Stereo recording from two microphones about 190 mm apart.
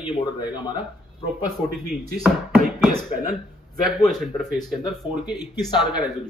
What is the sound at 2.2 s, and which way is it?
Speech, centre (ahead or behind).